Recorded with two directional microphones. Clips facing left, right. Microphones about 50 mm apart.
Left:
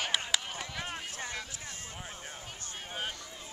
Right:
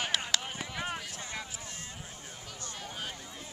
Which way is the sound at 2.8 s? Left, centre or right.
Left.